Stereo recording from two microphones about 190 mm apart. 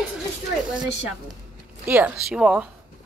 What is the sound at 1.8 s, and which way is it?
Speech, 10° right (ahead or behind).